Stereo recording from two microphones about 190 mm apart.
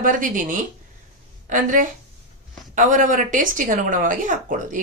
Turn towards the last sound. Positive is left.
turn(degrees=-45)  # may be behind; listen again after turning